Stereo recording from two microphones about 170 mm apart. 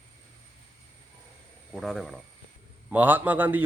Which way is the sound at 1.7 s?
Centre (ahead or behind).